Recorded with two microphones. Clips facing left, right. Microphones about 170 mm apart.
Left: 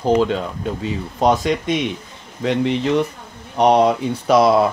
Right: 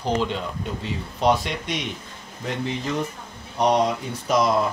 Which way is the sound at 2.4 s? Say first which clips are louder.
Left 9 dB; 75° left (ahead or behind).